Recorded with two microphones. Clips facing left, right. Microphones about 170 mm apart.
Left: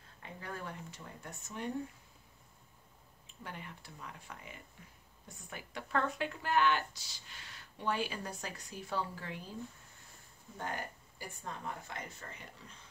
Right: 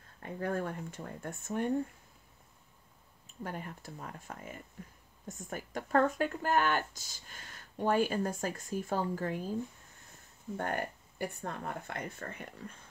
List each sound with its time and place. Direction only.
0.2 s speech: 50° right (ahead or behind)
3.3 s speech: 45° right (ahead or behind)
10.6 s speech: 60° right (ahead or behind)